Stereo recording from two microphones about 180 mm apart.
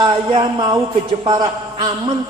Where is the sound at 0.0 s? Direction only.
25° right (ahead or behind).